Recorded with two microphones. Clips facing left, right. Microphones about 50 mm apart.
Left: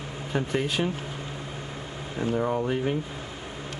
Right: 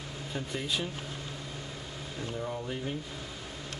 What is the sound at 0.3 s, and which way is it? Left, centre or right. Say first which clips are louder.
Speech: left 10 dB; left.